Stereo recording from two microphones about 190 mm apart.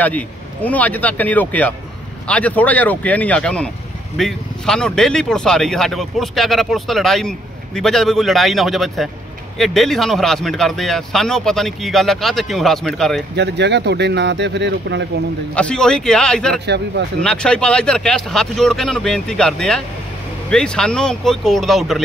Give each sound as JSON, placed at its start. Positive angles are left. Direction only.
{"t": 0.7, "sound": "speech", "side_deg": 10}
{"t": 13.4, "sound": "speech", "side_deg": -65}
{"t": 15.5, "sound": "speech", "side_deg": 5}
{"t": 16.6, "sound": "speech", "side_deg": -65}
{"t": 17.2, "sound": "speech", "side_deg": 5}